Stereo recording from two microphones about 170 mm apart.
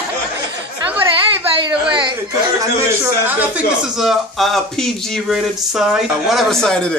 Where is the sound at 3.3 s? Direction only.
10° right (ahead or behind).